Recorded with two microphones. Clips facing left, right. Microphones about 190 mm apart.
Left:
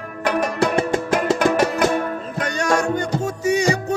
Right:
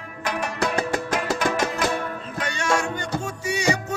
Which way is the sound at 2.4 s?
40° left (ahead or behind).